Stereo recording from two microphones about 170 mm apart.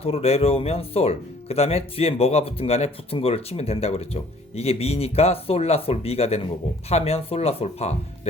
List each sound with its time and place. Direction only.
0.0 s speech: 35° left (ahead or behind)